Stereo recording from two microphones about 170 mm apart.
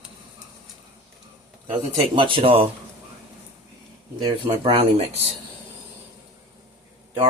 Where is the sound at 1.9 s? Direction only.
30° right (ahead or behind).